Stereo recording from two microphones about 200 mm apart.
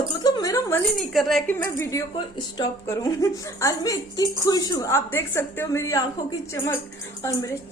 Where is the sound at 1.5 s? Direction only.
15° left (ahead or behind).